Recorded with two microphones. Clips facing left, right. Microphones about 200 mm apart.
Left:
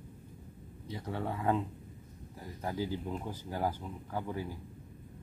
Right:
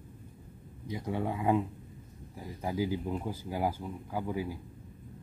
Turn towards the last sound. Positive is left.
turn(degrees=-10)  # may be behind; listen again after turning